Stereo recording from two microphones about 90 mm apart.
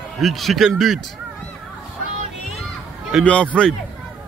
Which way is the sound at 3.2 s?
15° left (ahead or behind).